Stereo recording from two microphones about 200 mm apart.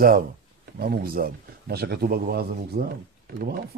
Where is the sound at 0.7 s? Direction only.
50° right (ahead or behind).